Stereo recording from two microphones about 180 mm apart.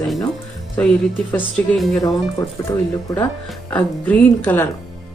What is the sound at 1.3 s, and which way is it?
Speech, 5° left (ahead or behind).